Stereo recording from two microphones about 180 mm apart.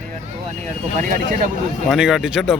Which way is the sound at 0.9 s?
45° right (ahead or behind).